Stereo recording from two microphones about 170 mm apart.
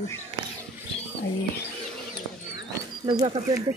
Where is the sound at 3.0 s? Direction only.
30° right (ahead or behind).